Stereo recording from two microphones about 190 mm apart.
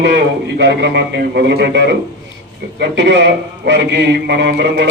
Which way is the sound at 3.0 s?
65° right (ahead or behind).